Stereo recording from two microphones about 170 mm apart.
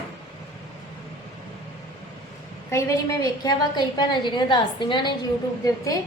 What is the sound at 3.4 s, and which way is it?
A woman's voice, 25° left (ahead or behind).